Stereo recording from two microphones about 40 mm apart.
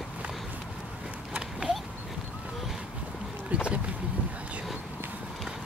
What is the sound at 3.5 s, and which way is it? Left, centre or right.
Boat, right.